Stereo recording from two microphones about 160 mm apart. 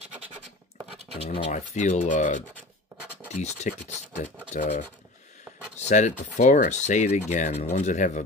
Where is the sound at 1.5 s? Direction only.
50° left (ahead or behind).